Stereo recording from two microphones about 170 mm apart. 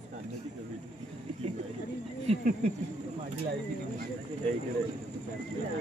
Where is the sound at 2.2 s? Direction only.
40° right (ahead or behind).